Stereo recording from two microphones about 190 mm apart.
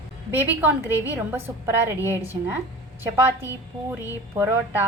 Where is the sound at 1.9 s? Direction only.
15° left (ahead or behind).